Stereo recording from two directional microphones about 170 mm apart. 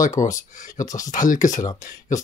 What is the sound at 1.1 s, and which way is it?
Speech, 50° left (ahead or behind).